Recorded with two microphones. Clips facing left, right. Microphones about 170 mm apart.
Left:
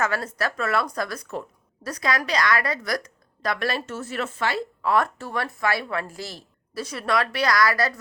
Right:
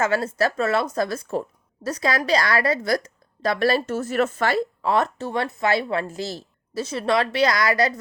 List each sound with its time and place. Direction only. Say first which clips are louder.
0.0 s a woman's voice: right 5 dB; 25° right (ahead or behind); by 4.6 s 45° right (ahead or behind)
4.8 s a woman's voice: right 1 dB; 25° right (ahead or behind)